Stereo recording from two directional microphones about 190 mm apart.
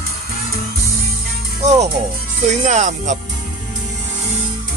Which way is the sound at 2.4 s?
40° right (ahead or behind).